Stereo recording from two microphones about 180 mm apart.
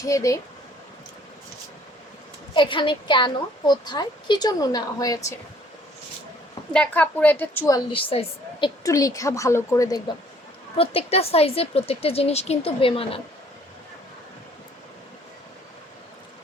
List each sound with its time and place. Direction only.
0.0 s a woman's voice: 20° left (ahead or behind)
2.5 s a woman's voice: 25° left (ahead or behind)
6.7 s a woman's voice: 10° left (ahead or behind)
7.9 s a woman's voice: 30° left (ahead or behind)
8.8 s a woman's voice: 20° left (ahead or behind)
10.8 s a woman's voice: 35° left (ahead or behind)